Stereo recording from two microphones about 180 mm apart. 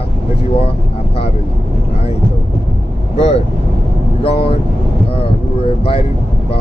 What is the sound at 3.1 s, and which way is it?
Vehicle, 35° left (ahead or behind).